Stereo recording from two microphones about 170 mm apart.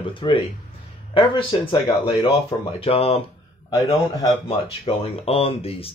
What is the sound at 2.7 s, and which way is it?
Speech, 35° left (ahead or behind).